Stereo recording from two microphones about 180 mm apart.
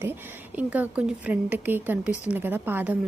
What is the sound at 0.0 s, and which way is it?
Speech, 10° right (ahead or behind).